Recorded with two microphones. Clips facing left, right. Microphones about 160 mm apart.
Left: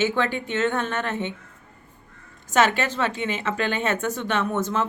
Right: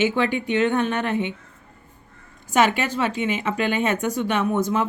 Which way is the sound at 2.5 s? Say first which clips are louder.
Right 1 dB; 15° right (ahead or behind).